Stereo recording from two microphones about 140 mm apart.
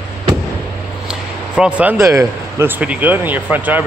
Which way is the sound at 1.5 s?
10° right (ahead or behind).